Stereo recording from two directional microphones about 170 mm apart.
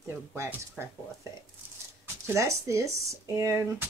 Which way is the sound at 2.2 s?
15° right (ahead or behind).